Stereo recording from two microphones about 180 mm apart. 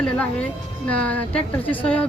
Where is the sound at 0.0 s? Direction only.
5° left (ahead or behind).